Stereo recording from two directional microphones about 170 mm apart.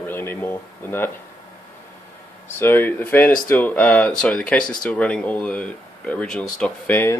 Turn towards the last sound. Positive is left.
turn(degrees=10)  # may be behind; listen again after turning